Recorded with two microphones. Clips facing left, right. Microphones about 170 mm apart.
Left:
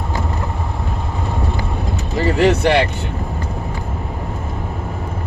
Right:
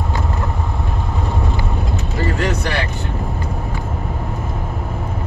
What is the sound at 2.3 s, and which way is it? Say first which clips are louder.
Speech: left 11 dB; 75° left (ahead or behind).